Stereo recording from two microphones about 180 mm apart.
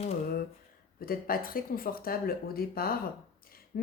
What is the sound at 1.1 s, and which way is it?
Speech, 50° left (ahead or behind).